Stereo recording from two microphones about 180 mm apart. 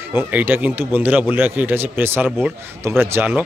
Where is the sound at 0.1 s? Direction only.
10° right (ahead or behind).